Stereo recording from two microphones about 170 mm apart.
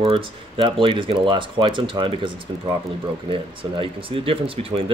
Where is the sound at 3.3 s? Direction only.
30° right (ahead or behind).